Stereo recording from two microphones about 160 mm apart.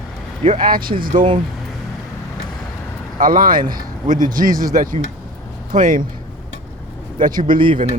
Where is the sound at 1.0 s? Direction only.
55° right (ahead or behind).